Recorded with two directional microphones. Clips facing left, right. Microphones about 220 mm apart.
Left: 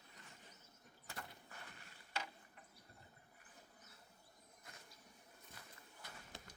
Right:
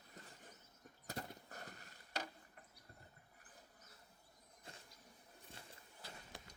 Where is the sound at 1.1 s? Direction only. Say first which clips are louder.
Right 6 dB; 40° right (ahead or behind).